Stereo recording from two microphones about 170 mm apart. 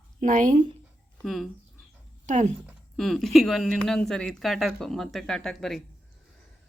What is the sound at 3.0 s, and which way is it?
Speech, centre (ahead or behind).